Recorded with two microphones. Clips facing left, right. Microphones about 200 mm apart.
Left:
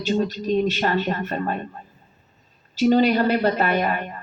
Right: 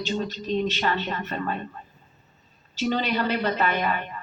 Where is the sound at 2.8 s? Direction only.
45° left (ahead or behind).